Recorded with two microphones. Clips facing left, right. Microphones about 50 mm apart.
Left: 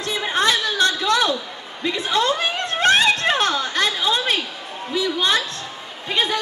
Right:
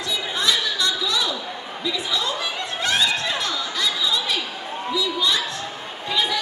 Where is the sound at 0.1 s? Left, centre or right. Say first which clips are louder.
Left 4 dB; left.